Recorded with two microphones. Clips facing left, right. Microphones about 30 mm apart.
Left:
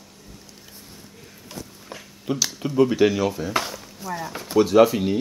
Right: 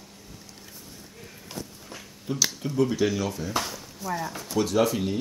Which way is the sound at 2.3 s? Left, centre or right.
Left.